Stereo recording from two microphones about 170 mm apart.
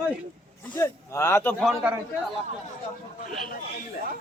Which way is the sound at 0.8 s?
15° left (ahead or behind).